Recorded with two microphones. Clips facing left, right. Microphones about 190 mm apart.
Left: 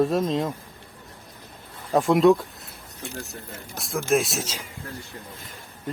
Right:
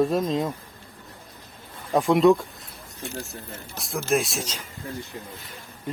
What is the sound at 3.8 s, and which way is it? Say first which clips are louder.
Speech: left 2 dB; centre (ahead or behind).